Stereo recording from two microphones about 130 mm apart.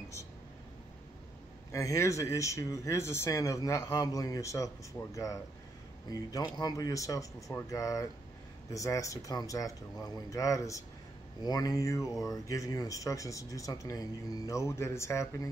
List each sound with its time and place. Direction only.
1.7 s speech: 25° left (ahead or behind)